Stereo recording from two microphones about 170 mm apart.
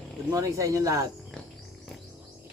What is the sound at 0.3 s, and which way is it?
Speech, 20° right (ahead or behind).